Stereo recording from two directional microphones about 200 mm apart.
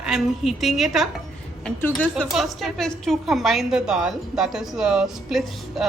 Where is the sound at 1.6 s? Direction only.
10° left (ahead or behind).